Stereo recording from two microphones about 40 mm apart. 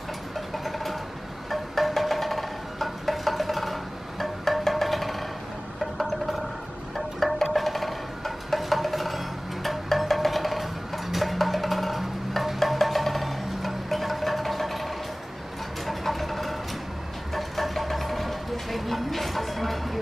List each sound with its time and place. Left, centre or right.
0.7 s vehicle: centre
1.5 s music: centre
15.8 s vehicle: centre
17.3 s a sound: centre